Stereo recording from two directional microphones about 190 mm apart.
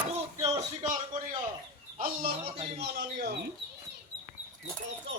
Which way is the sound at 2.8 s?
55° right (ahead or behind).